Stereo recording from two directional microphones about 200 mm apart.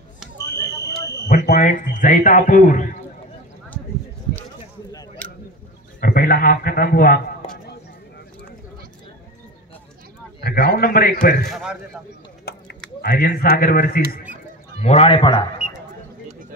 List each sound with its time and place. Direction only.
1.3 s a man's voice: 40° left (ahead or behind)
5.2 s a sound: 5° left (ahead or behind)
5.9 s a man's voice: 45° left (ahead or behind)
10.4 s a man's voice: 50° left (ahead or behind)
11.4 s a man's voice: centre (ahead or behind)
12.5 s a sound: 50° left (ahead or behind)
13.0 s a man's voice: 50° left (ahead or behind)
14.8 s a man's voice: 30° left (ahead or behind)